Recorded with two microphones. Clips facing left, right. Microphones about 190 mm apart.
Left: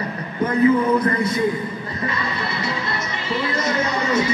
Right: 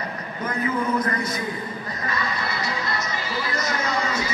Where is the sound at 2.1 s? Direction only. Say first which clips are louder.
Even; 25° left (ahead or behind).